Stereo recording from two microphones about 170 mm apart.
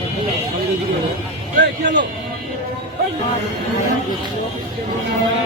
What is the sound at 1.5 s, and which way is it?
Speech, 90° right.